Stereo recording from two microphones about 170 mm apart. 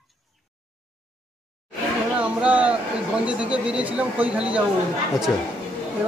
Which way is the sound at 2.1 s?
10° right (ahead or behind).